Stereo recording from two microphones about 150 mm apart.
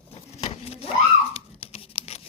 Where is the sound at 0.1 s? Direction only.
45° left (ahead or behind).